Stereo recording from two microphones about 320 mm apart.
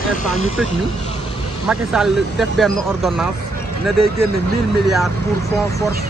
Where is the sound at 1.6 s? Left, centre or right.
Centre.